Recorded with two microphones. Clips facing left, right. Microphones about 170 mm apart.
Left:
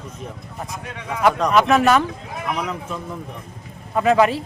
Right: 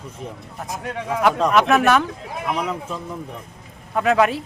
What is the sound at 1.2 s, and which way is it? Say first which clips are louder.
A man's voice: left 1 dB; centre (ahead or behind).